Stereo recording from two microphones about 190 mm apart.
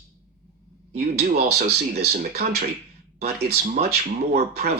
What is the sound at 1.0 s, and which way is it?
Speech, 55° right (ahead or behind).